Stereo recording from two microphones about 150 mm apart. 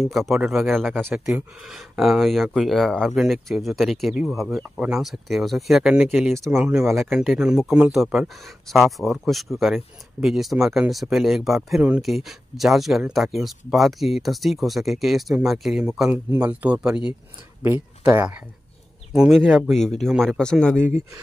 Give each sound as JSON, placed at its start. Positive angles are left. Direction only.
{"t": 0.0, "sound": "speech", "side_deg": 0}
{"t": 18.0, "sound": "speech", "side_deg": -10}